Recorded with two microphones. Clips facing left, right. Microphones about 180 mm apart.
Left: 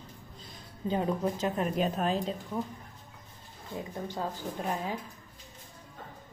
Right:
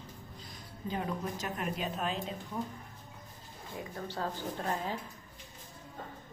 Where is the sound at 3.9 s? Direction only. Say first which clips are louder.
Left 1 dB; 15° left (ahead or behind).